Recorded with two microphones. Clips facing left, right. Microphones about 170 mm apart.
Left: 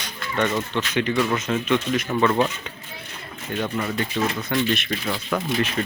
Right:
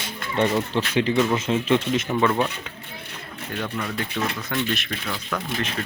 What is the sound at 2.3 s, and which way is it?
Speech, centre (ahead or behind).